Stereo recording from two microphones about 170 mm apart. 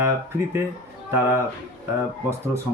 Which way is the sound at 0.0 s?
15° right (ahead or behind).